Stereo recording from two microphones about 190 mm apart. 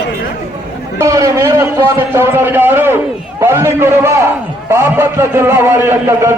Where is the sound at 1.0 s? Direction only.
15° right (ahead or behind).